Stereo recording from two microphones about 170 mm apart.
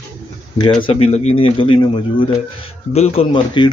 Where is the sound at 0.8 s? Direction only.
35° left (ahead or behind).